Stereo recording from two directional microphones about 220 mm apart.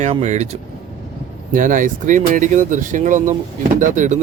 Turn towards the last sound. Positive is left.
turn(degrees=-35)  # may be behind; listen again after turning